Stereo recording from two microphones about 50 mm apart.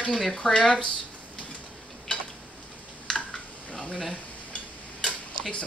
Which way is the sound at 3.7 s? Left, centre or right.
Centre.